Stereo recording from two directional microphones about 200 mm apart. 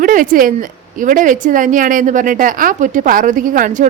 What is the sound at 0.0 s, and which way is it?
A woman's voice, 40° right (ahead or behind).